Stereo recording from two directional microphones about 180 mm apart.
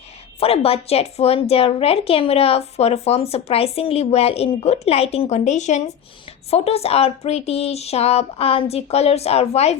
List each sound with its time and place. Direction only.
0.3 s a woman's voice: 35° left (ahead or behind)